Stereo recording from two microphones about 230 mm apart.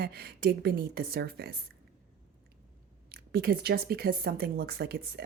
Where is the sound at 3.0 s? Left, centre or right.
Right.